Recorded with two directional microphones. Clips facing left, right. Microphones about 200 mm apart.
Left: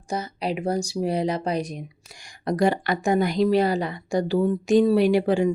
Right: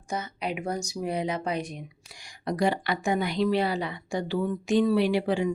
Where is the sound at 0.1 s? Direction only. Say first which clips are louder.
Left 4 dB; 35° left (ahead or behind).